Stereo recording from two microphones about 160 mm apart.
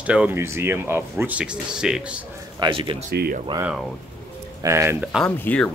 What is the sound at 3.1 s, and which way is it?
Speech, 75° right (ahead or behind).